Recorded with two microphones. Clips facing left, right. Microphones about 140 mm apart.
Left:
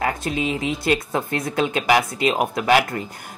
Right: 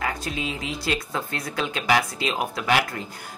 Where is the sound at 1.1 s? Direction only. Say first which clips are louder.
Left 6 dB; 20° left (ahead or behind).